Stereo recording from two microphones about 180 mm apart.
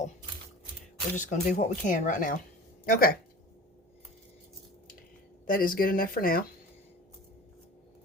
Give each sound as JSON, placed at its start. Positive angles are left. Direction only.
{"t": 1.1, "sound": "speech", "side_deg": 40}
{"t": 5.5, "sound": "speech", "side_deg": 50}